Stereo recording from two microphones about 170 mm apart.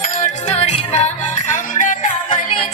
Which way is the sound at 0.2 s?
40° left (ahead or behind).